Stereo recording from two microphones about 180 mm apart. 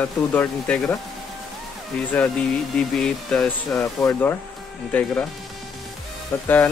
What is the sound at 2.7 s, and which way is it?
Speech, 5° left (ahead or behind).